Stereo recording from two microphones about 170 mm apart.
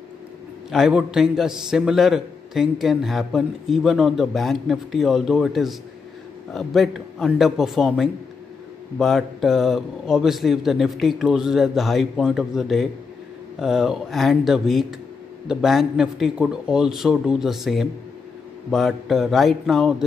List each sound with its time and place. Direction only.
0.7 s a man's voice: 5° right (ahead or behind)